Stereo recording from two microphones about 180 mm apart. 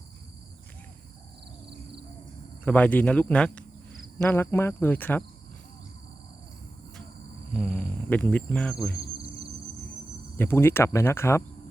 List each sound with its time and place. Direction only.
2.6 s speech: 10° left (ahead or behind)
7.5 s speech: 10° left (ahead or behind)
9.0 s insect: 65° right (ahead or behind)
10.3 s speech: 10° left (ahead or behind)